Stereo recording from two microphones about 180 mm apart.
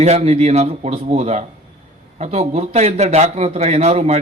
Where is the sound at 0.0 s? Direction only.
35° right (ahead or behind).